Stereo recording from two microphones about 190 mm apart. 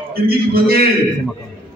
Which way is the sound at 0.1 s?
55° right (ahead or behind).